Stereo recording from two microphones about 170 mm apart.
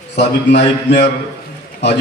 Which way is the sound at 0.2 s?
85° left.